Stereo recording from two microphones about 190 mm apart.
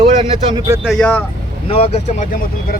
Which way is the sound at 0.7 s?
5° right (ahead or behind).